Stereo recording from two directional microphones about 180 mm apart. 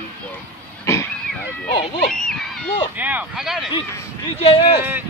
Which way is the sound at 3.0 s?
10° right (ahead or behind).